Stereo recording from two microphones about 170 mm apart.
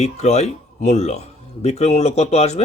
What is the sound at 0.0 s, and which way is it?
Speech, 40° left (ahead or behind).